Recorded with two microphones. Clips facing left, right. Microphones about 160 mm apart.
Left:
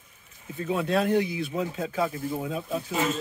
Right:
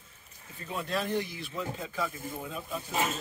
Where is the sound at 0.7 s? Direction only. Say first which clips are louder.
Left 8 dB; 75° left (ahead or behind); by 2.4 s 60° left (ahead or behind).